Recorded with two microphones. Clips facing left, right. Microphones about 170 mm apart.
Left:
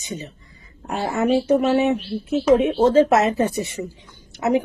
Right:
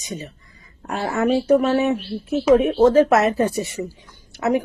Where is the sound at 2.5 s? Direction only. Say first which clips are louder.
Right 1 dB; 20° left (ahead or behind).